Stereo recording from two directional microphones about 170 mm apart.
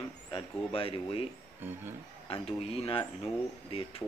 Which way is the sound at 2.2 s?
35° left (ahead or behind).